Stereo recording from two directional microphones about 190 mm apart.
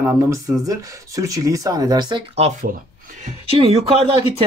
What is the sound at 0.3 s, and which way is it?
Speech, 15° right (ahead or behind).